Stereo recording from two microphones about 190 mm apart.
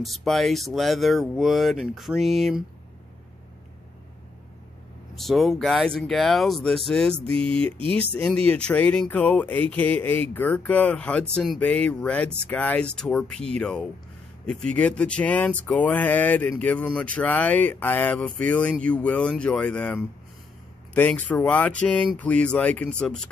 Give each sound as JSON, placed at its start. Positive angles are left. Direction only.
{"t": 0.0, "sound": "speech", "side_deg": 0}
{"t": 5.1, "sound": "speech", "side_deg": 0}
{"t": 7.5, "sound": "speech", "side_deg": -30}
{"t": 8.1, "sound": "speech", "side_deg": 5}